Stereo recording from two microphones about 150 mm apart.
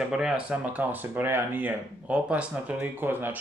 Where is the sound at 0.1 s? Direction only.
5° right (ahead or behind).